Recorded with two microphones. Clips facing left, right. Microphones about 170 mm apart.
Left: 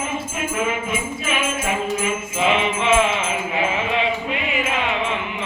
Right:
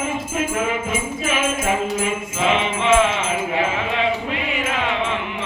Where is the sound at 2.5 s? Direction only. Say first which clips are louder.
Right 1 dB; 35° right (ahead or behind).